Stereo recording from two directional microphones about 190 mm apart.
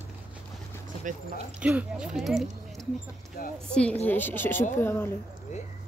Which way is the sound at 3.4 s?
50° left (ahead or behind).